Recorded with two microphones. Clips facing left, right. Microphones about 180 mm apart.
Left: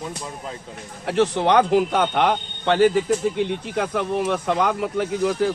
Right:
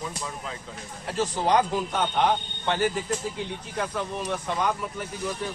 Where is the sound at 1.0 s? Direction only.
65° left (ahead or behind).